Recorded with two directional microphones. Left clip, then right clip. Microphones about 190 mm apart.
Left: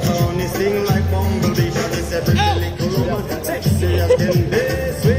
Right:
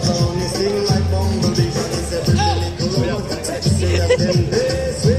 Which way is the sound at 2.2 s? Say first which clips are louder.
Left 1 dB; 10° right (ahead or behind).